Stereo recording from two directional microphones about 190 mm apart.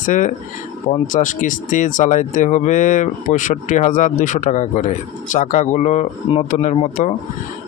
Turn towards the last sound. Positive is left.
turn(degrees=35)  # may be behind; listen again after turning